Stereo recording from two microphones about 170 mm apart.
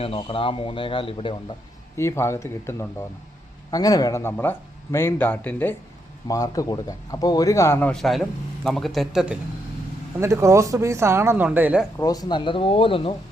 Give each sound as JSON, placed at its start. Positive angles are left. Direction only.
{"t": 0.0, "sound": "a man's voice", "side_deg": 35}
{"t": 2.0, "sound": "speech", "side_deg": 15}
{"t": 6.2, "sound": "speech", "side_deg": 20}
{"t": 10.2, "sound": "speech", "side_deg": -15}
{"t": 11.9, "sound": "a man's voice", "side_deg": 20}